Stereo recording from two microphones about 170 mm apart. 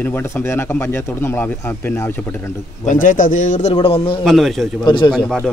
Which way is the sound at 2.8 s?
50° left (ahead or behind).